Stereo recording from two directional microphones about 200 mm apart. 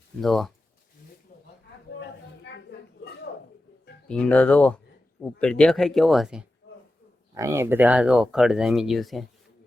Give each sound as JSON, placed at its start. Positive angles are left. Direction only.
{"t": 0.2, "sound": "speech", "side_deg": 0}
{"t": 2.0, "sound": "a sound", "side_deg": 55}
{"t": 4.1, "sound": "speech", "side_deg": 5}
{"t": 7.3, "sound": "speech", "side_deg": -15}